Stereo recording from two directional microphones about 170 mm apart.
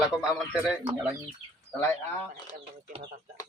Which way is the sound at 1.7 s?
15° left (ahead or behind).